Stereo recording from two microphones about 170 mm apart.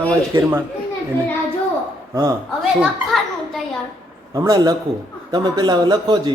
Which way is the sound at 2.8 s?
Centre (ahead or behind).